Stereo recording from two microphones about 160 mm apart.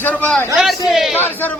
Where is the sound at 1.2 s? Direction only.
10° left (ahead or behind).